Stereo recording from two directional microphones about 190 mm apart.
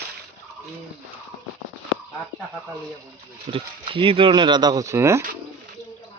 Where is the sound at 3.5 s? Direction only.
30° right (ahead or behind).